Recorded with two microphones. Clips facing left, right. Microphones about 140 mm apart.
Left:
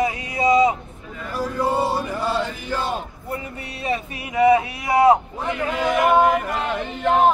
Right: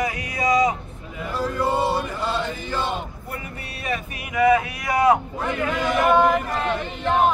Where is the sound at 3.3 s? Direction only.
25° left (ahead or behind).